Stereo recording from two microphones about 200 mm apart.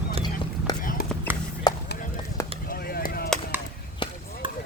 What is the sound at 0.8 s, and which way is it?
Clip-clop, 45° left (ahead or behind).